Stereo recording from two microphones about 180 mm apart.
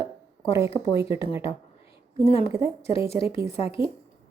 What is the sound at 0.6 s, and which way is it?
Speech, 15° right (ahead or behind).